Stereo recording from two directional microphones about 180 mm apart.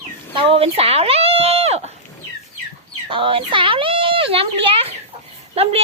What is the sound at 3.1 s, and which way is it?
A woman's voice, 30° right (ahead or behind).